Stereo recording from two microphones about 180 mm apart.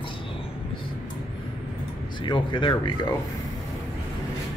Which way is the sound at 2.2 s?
25° left (ahead or behind).